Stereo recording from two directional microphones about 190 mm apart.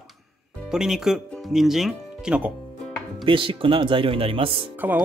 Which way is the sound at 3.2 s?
25° right (ahead or behind).